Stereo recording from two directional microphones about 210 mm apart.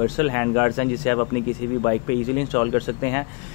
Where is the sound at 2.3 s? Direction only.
15° left (ahead or behind).